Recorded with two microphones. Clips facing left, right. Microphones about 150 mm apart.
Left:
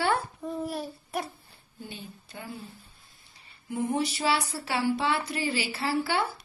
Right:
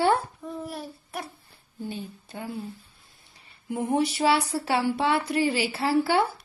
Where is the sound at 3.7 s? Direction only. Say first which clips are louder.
Right 3 dB; 50° right (ahead or behind).